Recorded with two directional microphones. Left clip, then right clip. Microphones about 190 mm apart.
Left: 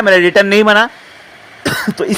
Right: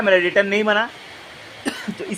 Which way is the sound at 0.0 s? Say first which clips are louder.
Left 7 dB; 30° left (ahead or behind).